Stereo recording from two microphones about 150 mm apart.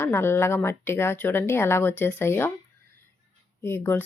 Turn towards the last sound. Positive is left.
turn(degrees=15)  # may be behind; listen again after turning